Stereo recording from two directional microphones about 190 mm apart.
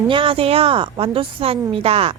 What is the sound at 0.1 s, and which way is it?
A woman's voice, 30° right (ahead or behind).